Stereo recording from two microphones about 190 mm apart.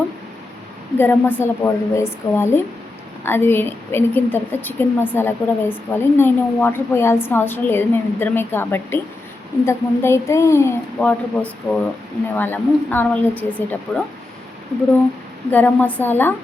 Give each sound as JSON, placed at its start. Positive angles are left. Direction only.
{"t": 0.9, "sound": "a woman's voice", "side_deg": 10}
{"t": 15.4, "sound": "a woman's voice", "side_deg": 10}